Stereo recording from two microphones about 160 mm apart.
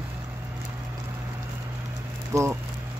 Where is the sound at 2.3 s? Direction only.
15° right (ahead or behind).